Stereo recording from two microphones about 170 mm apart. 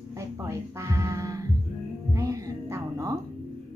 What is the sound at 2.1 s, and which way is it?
Music, 20° right (ahead or behind).